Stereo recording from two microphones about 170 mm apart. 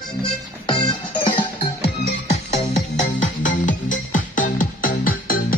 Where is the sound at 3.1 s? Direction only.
50° left (ahead or behind).